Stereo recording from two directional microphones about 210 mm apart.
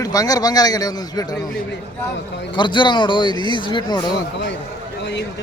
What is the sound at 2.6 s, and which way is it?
A man's voice, 20° left (ahead or behind).